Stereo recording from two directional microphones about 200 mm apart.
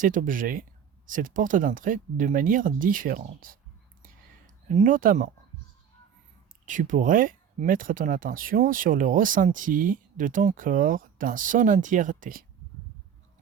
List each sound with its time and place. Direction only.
0.0 s speech: 40° right (ahead or behind)
4.7 s speech: 40° right (ahead or behind)
6.7 s speech: 40° right (ahead or behind)